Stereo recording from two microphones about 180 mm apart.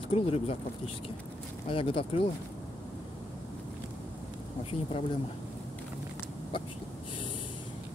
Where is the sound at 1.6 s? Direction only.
30° left (ahead or behind).